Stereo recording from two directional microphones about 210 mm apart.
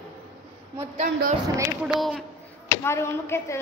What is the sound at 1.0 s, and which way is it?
Speech, 40° right (ahead or behind).